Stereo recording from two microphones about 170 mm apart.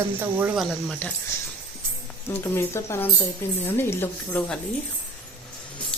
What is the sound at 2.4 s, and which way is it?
A woman's voice, 15° left (ahead or behind).